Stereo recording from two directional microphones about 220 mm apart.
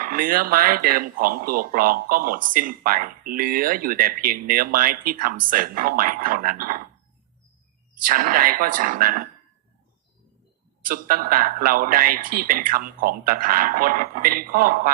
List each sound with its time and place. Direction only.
0.0 s speech: 40° right (ahead or behind)
8.0 s speech: 40° right (ahead or behind)
10.8 s speech: 40° right (ahead or behind)